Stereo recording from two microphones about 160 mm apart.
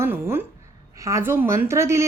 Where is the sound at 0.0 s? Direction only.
15° right (ahead or behind).